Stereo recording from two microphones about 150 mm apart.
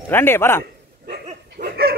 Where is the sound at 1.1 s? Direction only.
85° right.